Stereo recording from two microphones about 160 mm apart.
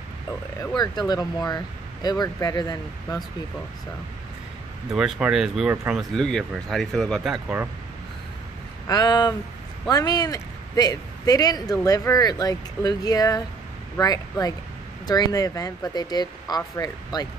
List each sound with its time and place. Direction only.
0.6 s speech: 25° left (ahead or behind)
4.9 s speech: 5° right (ahead or behind)
8.8 s speech: 25° left (ahead or behind)